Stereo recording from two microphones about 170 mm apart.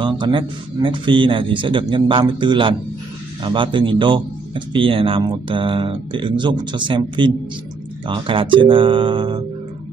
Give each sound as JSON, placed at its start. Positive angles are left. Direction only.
{"t": 0.0, "sound": "speech", "side_deg": -30}